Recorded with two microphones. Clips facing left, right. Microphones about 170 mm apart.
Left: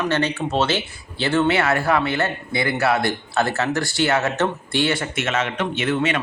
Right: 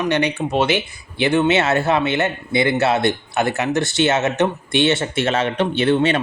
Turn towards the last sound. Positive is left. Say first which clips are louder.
# right 5 dB
turn(degrees=-30)  # may be behind; listen again after turning